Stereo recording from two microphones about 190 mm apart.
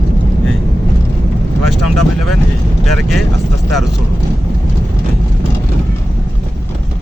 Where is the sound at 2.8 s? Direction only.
Centre (ahead or behind).